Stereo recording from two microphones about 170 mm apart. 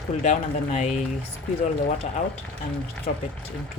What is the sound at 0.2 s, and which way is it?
Speech, 45° left (ahead or behind).